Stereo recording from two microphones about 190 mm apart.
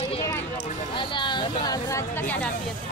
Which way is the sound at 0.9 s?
25° left (ahead or behind).